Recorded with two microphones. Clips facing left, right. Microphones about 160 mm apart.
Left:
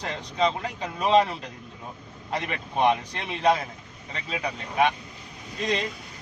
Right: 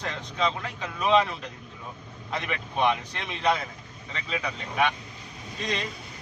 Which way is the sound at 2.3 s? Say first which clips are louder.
Left 2 dB; 35° left (ahead or behind).